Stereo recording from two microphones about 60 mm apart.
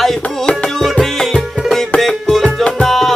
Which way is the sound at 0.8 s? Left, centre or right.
Centre.